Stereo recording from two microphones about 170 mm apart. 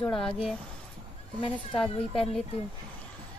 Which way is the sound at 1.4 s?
30° left (ahead or behind).